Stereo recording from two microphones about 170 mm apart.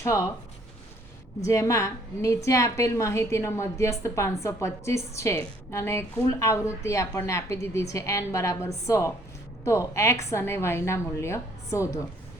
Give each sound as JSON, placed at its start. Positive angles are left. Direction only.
{"t": 0.0, "sound": "a woman's voice", "side_deg": 15}
{"t": 1.5, "sound": "a woman's voice", "side_deg": 20}